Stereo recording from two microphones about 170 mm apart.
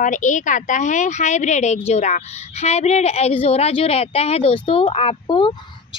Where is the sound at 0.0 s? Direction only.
45° left (ahead or behind).